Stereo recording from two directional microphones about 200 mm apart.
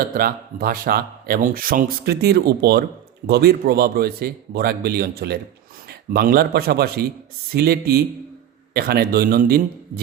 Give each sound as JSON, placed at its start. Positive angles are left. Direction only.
{"t": 0.0, "sound": "speech", "side_deg": -45}